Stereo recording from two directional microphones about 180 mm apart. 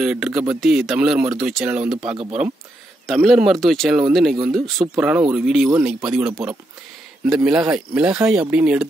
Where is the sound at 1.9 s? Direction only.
30° right (ahead or behind).